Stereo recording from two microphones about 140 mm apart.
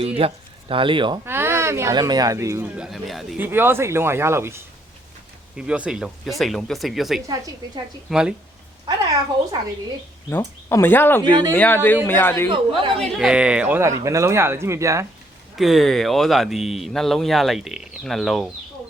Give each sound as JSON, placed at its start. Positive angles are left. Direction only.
{"t": 0.0, "sound": "speech", "side_deg": -45}
{"t": 1.2, "sound": "speech", "side_deg": -15}
{"t": 3.3, "sound": "speech", "side_deg": -15}
{"t": 10.2, "sound": "speech", "side_deg": 15}
{"t": 11.2, "sound": "speech", "side_deg": -30}
{"t": 11.5, "sound": "speech", "side_deg": 15}
{"t": 12.5, "sound": "speech", "side_deg": -35}
{"t": 13.0, "sound": "speech", "side_deg": -5}
{"t": 15.5, "sound": "speech", "side_deg": 0}